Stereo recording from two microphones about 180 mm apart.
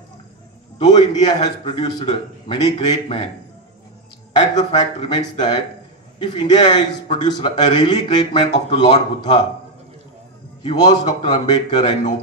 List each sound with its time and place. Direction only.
0.7 s a man's voice: 25° left (ahead or behind)
4.6 s a man's voice: 25° left (ahead or behind)
10.6 s a man's voice: 25° left (ahead or behind)